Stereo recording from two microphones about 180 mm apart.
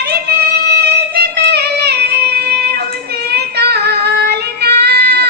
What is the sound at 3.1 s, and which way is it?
Child singing, 65° right (ahead or behind).